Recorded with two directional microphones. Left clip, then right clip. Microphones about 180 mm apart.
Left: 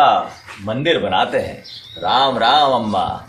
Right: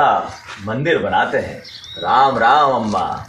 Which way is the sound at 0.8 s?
35° left (ahead or behind).